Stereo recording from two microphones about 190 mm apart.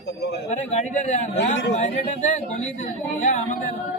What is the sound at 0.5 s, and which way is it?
Speech, 40° left (ahead or behind).